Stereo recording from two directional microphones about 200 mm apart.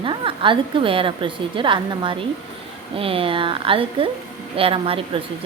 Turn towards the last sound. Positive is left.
turn(degrees=-25)  # may be behind; listen again after turning